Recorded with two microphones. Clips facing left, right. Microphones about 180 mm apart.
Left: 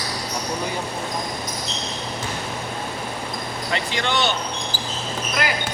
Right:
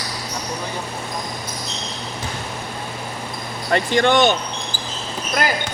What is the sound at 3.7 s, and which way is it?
Speech, 50° right (ahead or behind).